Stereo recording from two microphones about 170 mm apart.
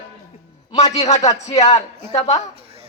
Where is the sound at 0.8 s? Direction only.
40° left (ahead or behind).